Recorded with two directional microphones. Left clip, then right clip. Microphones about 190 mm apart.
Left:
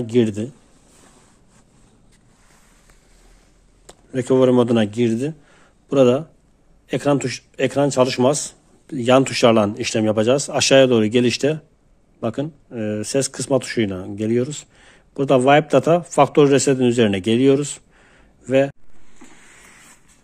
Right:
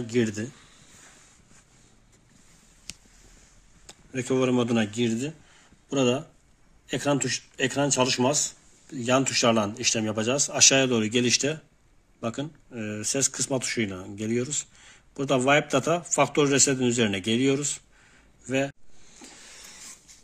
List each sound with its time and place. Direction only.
0.0 s speech: 15° left (ahead or behind)
3.8 s speech: 30° left (ahead or behind)